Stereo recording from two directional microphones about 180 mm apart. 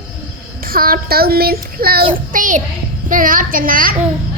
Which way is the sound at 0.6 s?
55° right (ahead or behind).